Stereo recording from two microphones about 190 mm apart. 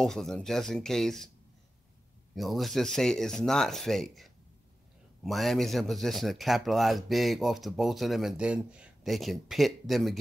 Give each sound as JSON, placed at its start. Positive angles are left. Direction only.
{"t": 0.0, "sound": "a man's voice", "side_deg": 0}
{"t": 2.3, "sound": "a man's voice", "side_deg": 0}